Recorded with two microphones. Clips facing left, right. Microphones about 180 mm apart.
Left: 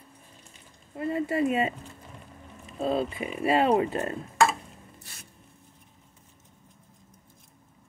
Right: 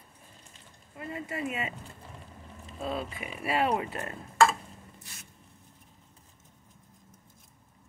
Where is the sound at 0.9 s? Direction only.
35° left (ahead or behind).